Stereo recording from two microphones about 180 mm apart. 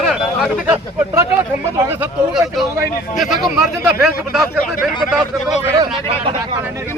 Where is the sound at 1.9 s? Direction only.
5° right (ahead or behind).